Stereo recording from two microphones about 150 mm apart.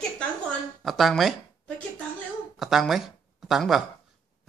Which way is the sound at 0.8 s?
Centre (ahead or behind).